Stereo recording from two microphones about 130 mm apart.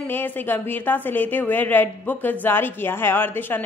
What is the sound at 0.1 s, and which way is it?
A woman's voice, 15° left (ahead or behind).